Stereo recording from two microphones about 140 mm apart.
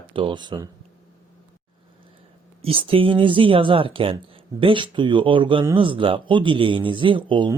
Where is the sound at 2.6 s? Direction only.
40° right (ahead or behind).